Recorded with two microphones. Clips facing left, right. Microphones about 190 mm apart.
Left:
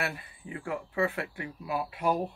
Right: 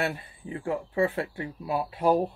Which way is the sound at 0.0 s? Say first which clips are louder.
Right 5 dB; 30° right (ahead or behind).